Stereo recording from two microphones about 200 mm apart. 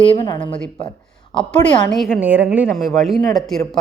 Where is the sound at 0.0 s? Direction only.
25° left (ahead or behind).